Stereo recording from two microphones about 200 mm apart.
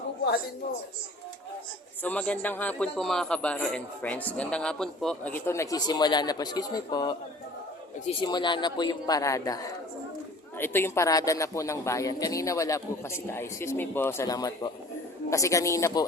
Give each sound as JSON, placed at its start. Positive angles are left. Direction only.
{"t": 2.0, "sound": "a man's voice", "side_deg": 5}
{"t": 8.2, "sound": "a man's voice", "side_deg": 20}